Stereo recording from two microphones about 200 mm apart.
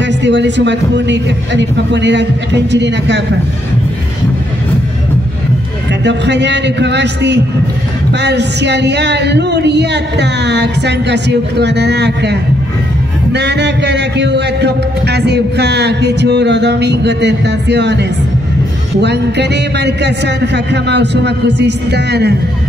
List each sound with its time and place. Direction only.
0.0 s music: 60° right (ahead or behind)
6.0 s music: 60° right (ahead or behind)